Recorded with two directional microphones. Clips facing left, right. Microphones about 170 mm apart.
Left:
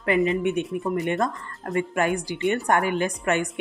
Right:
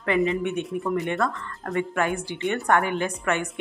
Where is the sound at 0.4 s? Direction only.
15° left (ahead or behind).